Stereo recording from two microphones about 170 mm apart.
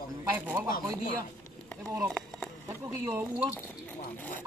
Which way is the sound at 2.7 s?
10° right (ahead or behind).